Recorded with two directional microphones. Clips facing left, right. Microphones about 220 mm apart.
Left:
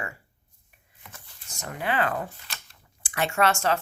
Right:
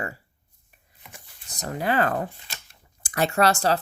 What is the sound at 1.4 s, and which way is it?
Speech, 35° right (ahead or behind).